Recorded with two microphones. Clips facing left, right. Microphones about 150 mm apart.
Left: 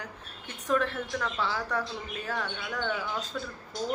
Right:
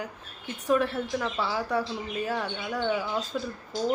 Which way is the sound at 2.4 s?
30° right (ahead or behind).